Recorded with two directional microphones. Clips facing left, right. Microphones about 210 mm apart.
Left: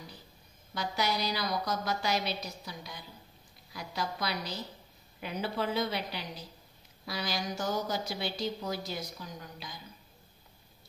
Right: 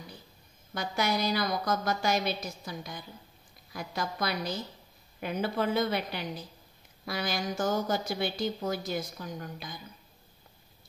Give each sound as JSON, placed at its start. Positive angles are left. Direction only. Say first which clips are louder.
{"t": 0.7, "sound": "a woman's voice", "louder": "right 2 dB", "side_deg": -50}